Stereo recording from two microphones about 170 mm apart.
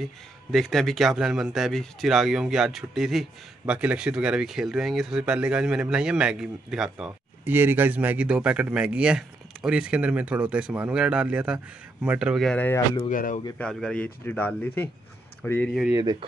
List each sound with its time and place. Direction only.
0.5 s speech: centre (ahead or behind)
13.1 s speech: 50° left (ahead or behind)
13.6 s speech: 5° left (ahead or behind)
15.9 s speech: 25° right (ahead or behind)